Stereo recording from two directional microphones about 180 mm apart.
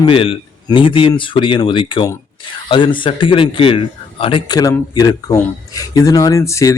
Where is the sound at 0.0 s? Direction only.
30° left (ahead or behind).